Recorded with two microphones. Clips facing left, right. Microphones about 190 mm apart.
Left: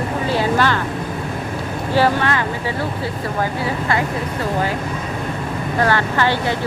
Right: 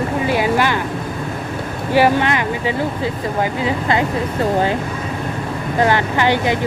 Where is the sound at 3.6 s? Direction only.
20° right (ahead or behind).